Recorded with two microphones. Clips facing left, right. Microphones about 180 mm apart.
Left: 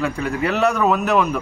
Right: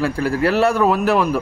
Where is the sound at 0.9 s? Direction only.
30° right (ahead or behind).